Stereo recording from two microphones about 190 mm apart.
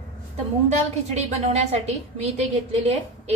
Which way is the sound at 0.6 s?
35° right (ahead or behind).